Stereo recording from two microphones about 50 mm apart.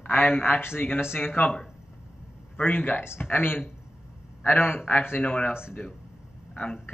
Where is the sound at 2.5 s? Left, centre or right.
Left.